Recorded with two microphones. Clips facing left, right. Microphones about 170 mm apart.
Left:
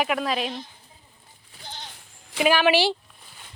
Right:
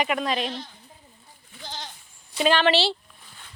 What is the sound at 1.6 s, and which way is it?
Goat, 90° right.